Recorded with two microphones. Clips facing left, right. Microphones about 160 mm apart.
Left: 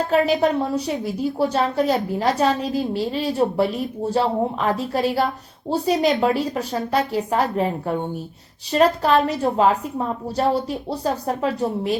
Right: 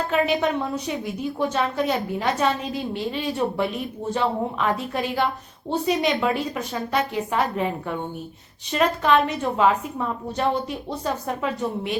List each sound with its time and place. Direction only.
0.1 s a woman's voice: 35° left (ahead or behind)